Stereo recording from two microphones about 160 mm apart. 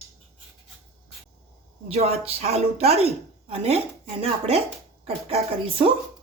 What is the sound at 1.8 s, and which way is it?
Speech, 40° right (ahead or behind).